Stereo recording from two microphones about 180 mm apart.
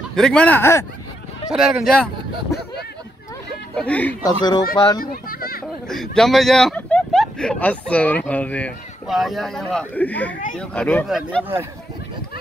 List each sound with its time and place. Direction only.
0.1 s speech: 5° left (ahead or behind)
1.5 s speech: centre (ahead or behind)
3.7 s speech: 5° left (ahead or behind)
4.2 s speech: 25° left (ahead or behind)
5.0 s children playing: 55° left (ahead or behind)
5.9 s speech: centre (ahead or behind)